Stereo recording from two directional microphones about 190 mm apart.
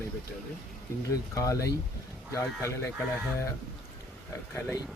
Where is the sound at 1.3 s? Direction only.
15° left (ahead or behind).